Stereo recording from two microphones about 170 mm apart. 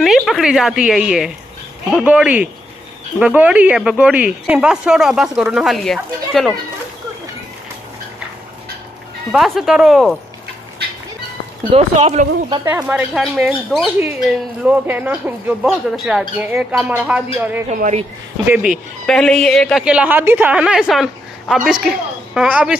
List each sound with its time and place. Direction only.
0.0 s a woman's voice: centre (ahead or behind)
9.3 s speech: centre (ahead or behind)
11.7 s speech: 40° right (ahead or behind)
12.8 s speech: centre (ahead or behind)
17.7 s speech: 45° right (ahead or behind)
18.5 s speech: 5° right (ahead or behind)
19.0 s speech: 5° left (ahead or behind)